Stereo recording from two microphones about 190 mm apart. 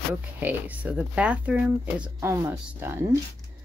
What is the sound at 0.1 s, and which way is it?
Speech, 10° right (ahead or behind).